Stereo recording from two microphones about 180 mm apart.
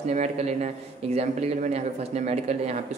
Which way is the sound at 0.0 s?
40° right (ahead or behind).